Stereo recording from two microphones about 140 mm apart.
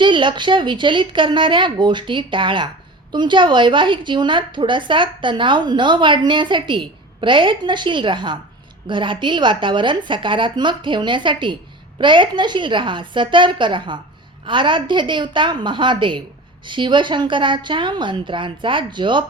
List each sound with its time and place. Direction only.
0.0 s a woman's voice: 35° right (ahead or behind)